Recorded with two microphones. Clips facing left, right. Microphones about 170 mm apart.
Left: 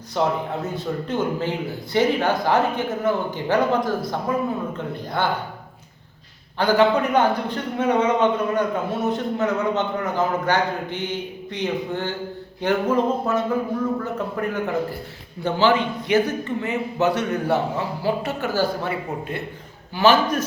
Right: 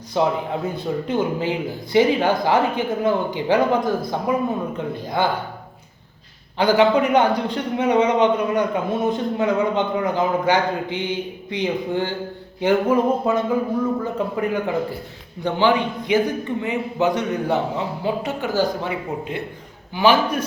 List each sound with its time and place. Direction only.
0.1 s a man's voice: 15° right (ahead or behind)
6.6 s a man's voice: 10° right (ahead or behind)